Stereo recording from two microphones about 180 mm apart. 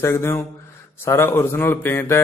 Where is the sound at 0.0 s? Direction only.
15° left (ahead or behind).